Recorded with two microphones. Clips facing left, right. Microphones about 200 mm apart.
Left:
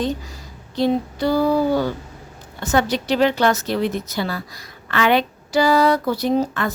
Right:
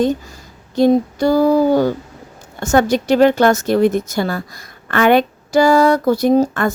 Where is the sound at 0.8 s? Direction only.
45° right (ahead or behind).